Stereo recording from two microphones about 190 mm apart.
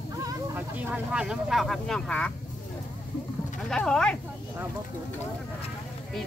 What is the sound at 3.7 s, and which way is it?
Speech, 5° left (ahead or behind).